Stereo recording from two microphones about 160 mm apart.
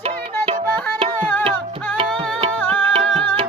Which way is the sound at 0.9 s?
35° right (ahead or behind).